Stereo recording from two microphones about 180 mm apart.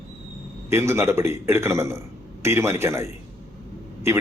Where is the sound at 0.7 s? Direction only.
15° right (ahead or behind).